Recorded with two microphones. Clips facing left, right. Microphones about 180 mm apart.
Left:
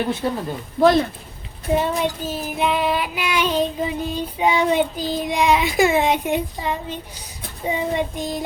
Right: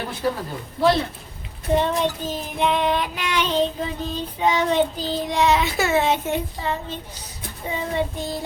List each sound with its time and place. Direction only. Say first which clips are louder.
0.2 s speech: even; 25° left (ahead or behind)
0.8 s speech: left 4 dB; 50° left (ahead or behind)
1.7 s child singing: even; 10° left (ahead or behind)